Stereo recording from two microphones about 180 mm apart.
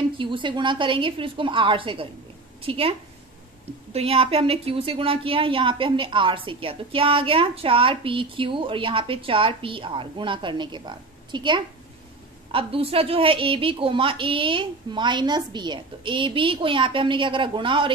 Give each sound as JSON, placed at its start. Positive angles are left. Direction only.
{"t": 0.2, "sound": "a woman's voice", "side_deg": -25}